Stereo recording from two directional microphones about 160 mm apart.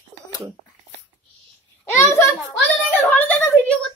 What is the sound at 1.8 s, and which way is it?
Speech, 15° left (ahead or behind).